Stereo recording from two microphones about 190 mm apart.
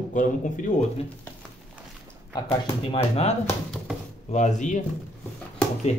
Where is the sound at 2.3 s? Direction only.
20° left (ahead or behind).